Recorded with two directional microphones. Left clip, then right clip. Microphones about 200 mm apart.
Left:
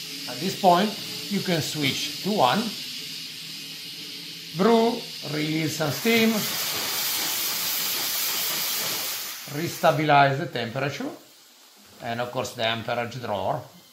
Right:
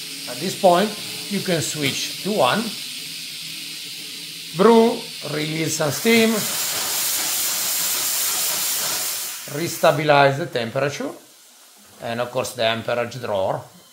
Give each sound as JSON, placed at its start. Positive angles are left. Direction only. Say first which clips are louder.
{"t": 0.6, "sound": "speech", "louder": "right 3 dB", "side_deg": -20}
{"t": 4.6, "sound": "speech", "louder": "right 6 dB", "side_deg": -30}
{"t": 9.6, "sound": "speech", "louder": "right 4 dB", "side_deg": -20}
{"t": 12.1, "sound": "speech", "louder": "right 4 dB", "side_deg": -25}